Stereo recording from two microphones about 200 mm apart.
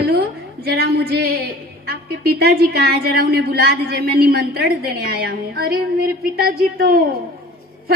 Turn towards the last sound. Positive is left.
turn(degrees=-50)  # may be behind; listen again after turning